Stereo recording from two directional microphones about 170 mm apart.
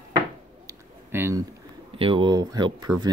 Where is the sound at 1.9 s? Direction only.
30° right (ahead or behind).